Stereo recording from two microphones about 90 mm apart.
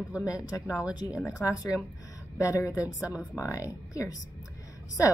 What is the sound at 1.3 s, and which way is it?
A woman's voice, 40° left (ahead or behind).